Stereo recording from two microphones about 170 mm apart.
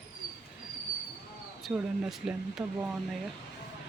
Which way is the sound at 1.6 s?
5° right (ahead or behind).